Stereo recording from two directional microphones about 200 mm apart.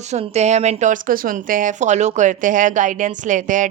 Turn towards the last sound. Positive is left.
turn(degrees=-40)  # may be behind; listen again after turning